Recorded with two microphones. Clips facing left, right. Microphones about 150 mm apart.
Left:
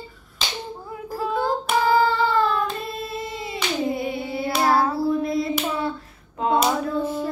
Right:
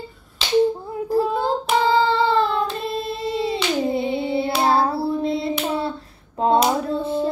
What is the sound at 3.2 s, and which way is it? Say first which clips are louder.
Hands: right 7 dB; 30° right (ahead or behind).